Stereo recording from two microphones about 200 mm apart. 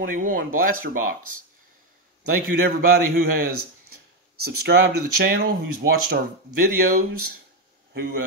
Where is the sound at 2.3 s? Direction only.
50° right (ahead or behind).